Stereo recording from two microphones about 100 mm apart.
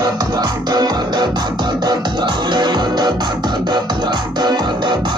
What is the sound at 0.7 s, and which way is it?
Music, 45° right (ahead or behind).